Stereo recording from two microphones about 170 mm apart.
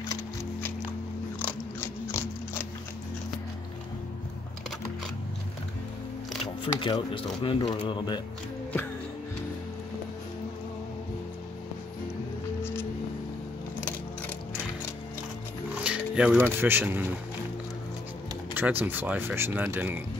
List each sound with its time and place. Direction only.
0.1 s music: 15° left (ahead or behind)
1.4 s biting: 15° left (ahead or behind)
6.4 s speech: 30° left (ahead or behind)
15.8 s speech: 5° right (ahead or behind)
18.5 s speech: 10° right (ahead or behind)